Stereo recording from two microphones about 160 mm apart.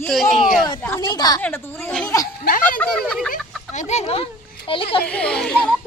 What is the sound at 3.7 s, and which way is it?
A child's voice, 45° left (ahead or behind).